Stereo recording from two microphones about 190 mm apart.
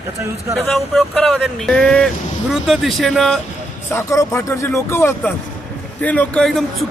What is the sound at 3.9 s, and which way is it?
Speech, 15° left (ahead or behind).